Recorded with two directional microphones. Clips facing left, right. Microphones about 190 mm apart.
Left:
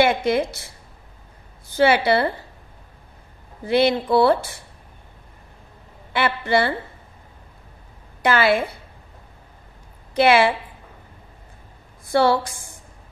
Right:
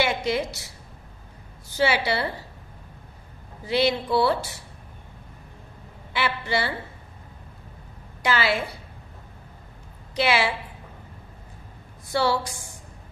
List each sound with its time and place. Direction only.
0.0 s speech: 55° left (ahead or behind)
1.8 s speech: 55° left (ahead or behind)
3.6 s speech: 55° left (ahead or behind)
6.1 s speech: 55° left (ahead or behind)
8.2 s a woman's voice: 55° left (ahead or behind)
10.1 s speech: 55° left (ahead or behind)
12.1 s a woman's voice: 55° left (ahead or behind)